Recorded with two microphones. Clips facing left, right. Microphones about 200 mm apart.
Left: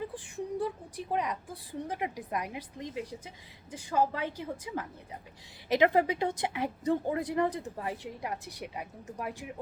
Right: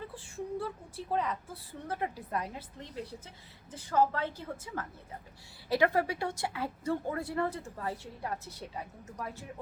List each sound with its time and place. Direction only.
0.1 s a woman's voice: 15° left (ahead or behind)